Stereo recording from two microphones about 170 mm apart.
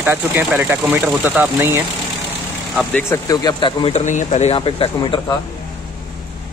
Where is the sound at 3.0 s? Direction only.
20° left (ahead or behind).